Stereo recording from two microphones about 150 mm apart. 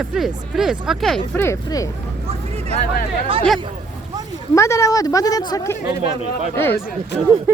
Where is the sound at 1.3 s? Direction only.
15° left (ahead or behind).